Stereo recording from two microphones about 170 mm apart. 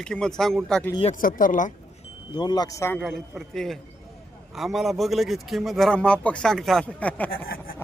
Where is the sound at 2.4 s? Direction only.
25° left (ahead or behind).